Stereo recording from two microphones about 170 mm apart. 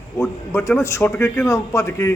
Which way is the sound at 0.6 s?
15° left (ahead or behind).